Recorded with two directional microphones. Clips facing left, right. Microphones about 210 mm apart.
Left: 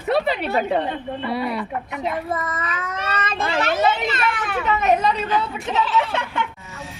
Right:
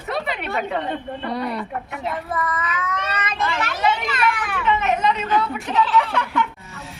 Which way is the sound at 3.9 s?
25° left (ahead or behind).